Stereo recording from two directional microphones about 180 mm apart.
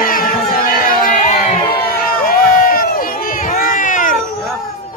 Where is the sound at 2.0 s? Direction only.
55° left (ahead or behind).